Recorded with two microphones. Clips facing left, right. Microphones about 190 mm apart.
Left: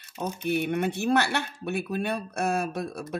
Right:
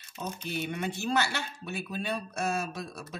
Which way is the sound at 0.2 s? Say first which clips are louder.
Left 7 dB; 60° left (ahead or behind).